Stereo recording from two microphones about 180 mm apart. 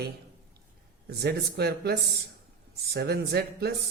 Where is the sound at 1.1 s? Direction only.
65° right (ahead or behind).